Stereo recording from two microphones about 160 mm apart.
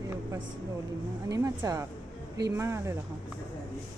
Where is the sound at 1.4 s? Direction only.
20° right (ahead or behind).